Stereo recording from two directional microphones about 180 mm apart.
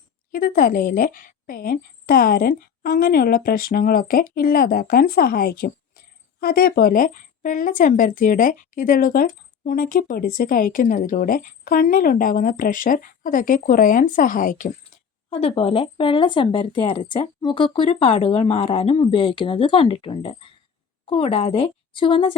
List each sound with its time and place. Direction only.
0.3 s a woman's voice: 50° left (ahead or behind)
15.3 s a woman's voice: 35° left (ahead or behind)